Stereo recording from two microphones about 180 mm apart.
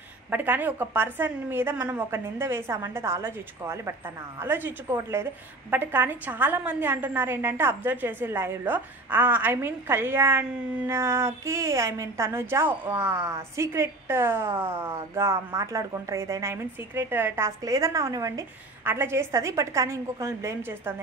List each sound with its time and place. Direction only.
0.3 s a woman's voice: 10° right (ahead or behind)